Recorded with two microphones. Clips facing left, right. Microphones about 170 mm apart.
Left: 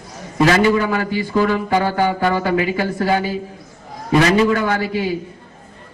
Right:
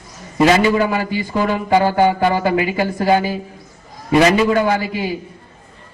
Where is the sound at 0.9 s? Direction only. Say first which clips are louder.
Even; 20° right (ahead or behind).